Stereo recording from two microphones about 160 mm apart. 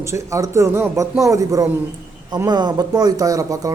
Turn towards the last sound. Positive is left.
turn(degrees=-20)  # may be behind; listen again after turning